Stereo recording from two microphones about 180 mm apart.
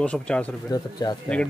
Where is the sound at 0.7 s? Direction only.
20° left (ahead or behind).